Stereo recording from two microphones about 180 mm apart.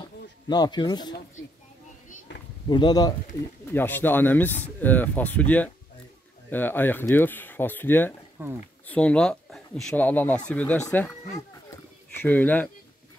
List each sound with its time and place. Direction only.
0.5 s speech: 25° left (ahead or behind)
2.7 s speech: 25° left (ahead or behind)
3.6 s speech: 10° left (ahead or behind)
8.4 s speech: 10° right (ahead or behind)
8.8 s speech: 5° left (ahead or behind)
12.2 s speech: 10° left (ahead or behind)